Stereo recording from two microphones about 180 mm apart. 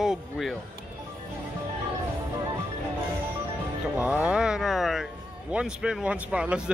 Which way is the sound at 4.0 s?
5° right (ahead or behind).